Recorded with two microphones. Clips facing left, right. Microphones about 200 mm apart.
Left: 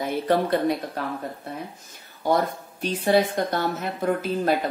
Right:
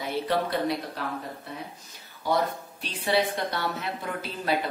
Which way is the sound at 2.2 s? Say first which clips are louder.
Left 4 dB; 45° left (ahead or behind).